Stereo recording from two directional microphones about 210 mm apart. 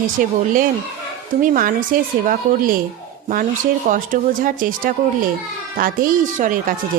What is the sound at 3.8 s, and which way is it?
Speech, 40° right (ahead or behind).